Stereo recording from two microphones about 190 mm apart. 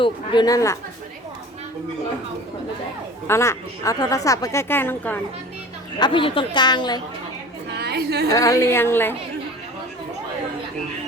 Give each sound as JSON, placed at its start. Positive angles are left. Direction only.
{"t": 0.0, "sound": "a woman's voice", "side_deg": 25}
{"t": 3.2, "sound": "a woman's voice", "side_deg": 15}
{"t": 6.0, "sound": "a woman's voice", "side_deg": 25}
{"t": 7.7, "sound": "a woman's voice", "side_deg": -60}
{"t": 8.3, "sound": "a woman's voice", "side_deg": 15}